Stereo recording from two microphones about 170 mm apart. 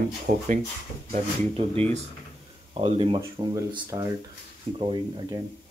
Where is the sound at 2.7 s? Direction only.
35° right (ahead or behind).